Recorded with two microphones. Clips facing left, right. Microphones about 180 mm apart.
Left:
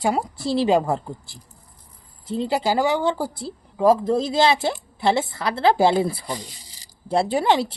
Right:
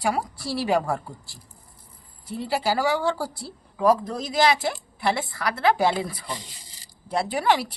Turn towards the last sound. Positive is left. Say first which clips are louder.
# left 3 dB
turn(degrees=25)  # may be behind; listen again after turning